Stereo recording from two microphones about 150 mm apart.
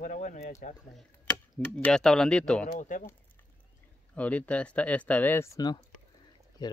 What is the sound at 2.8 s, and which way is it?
Speech, 60° left (ahead or behind).